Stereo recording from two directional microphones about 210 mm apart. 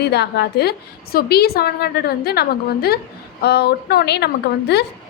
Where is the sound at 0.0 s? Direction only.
50° left (ahead or behind).